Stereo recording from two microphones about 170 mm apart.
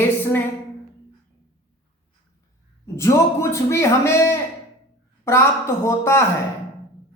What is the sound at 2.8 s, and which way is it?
A man's voice, 20° left (ahead or behind).